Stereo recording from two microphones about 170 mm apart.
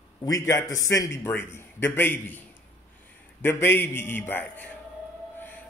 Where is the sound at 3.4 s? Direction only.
15° left (ahead or behind).